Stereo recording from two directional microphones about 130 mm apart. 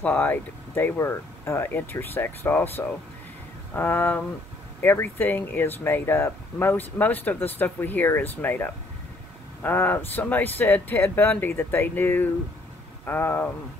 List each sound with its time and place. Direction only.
0.0 s speech: 15° left (ahead or behind)